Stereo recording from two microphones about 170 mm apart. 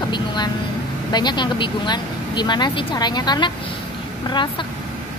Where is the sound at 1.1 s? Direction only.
25° left (ahead or behind).